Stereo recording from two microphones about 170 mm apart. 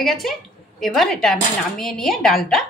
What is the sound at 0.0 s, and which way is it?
Speech, centre (ahead or behind).